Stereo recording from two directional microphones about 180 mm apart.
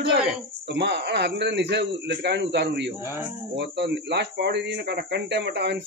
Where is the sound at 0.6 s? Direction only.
70° right (ahead or behind).